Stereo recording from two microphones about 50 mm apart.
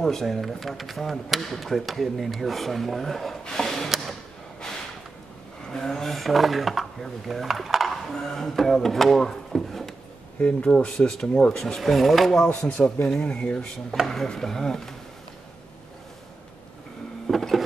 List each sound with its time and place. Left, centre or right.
0.0 s speech: centre
5.7 s speech: centre
10.4 s speech: left
11.6 s speech: centre
12.4 s speech: left
14.0 s speech: centre
17.3 s a sound: centre